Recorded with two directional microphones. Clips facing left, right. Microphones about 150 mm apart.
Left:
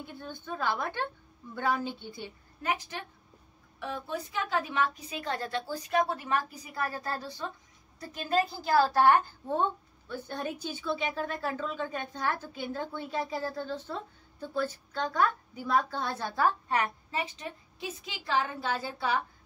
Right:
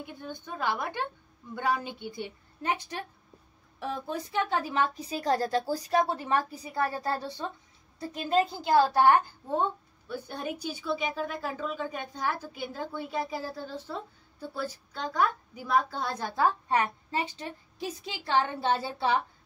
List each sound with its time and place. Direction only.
0.0 s a woman's voice: 15° right (ahead or behind)
2.6 s a woman's voice: 30° right (ahead or behind); by 16.4 s 15° right (ahead or behind)
16.6 s a woman's voice: 25° right (ahead or behind)